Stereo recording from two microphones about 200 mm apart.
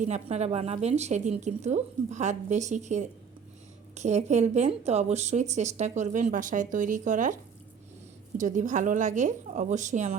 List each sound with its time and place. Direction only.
0.0 s a woman's voice: 35° right (ahead or behind)
8.4 s a woman's voice: 40° right (ahead or behind)